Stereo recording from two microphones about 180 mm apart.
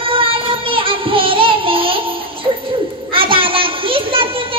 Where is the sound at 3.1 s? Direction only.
30° right (ahead or behind).